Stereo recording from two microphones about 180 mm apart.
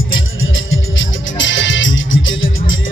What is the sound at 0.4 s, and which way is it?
Music, 90° left.